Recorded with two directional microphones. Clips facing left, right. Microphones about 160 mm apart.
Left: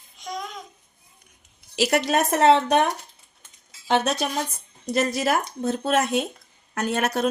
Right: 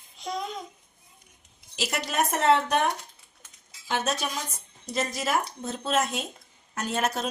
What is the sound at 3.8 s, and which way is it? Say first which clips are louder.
A woman's voice: left 6 dB; 70° left (ahead or behind).